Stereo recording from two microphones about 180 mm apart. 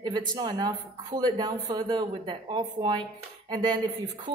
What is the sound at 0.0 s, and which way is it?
A woman's voice, 25° right (ahead or behind).